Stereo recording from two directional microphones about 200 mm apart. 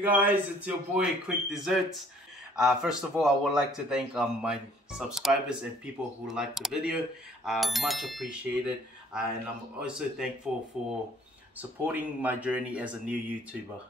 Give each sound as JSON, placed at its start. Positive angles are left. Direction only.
{"t": 0.0, "sound": "speech", "side_deg": -10}
{"t": 11.8, "sound": "speech", "side_deg": -10}